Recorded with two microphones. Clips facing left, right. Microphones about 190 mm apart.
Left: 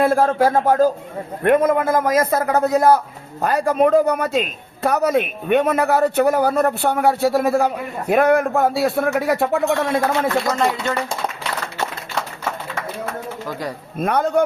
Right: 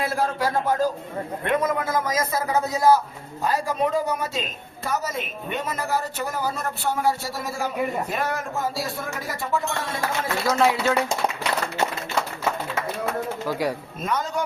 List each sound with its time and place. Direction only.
0.0 s a man's voice: 50° left (ahead or behind)
10.6 s speech: 5° right (ahead or behind)
13.5 s speech: 10° right (ahead or behind)
14.0 s a man's voice: 55° left (ahead or behind)